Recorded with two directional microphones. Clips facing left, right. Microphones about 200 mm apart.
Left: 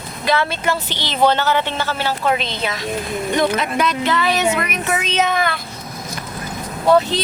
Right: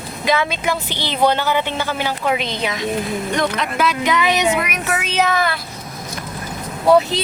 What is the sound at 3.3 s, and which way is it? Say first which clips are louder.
Speech: left 4 dB; 5° left (ahead or behind).